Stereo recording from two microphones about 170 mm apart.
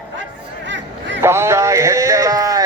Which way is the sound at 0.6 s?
90° right.